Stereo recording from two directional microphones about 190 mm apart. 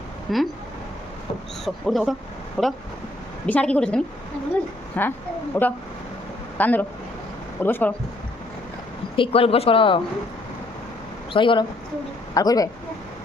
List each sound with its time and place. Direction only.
0.3 s a woman's voice: centre (ahead or behind)
1.6 s a woman's voice: centre (ahead or behind)
9.1 s speech: 30° left (ahead or behind)
11.3 s speech: 25° left (ahead or behind)